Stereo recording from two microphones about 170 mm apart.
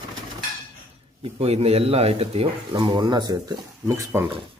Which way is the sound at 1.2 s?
35° right (ahead or behind).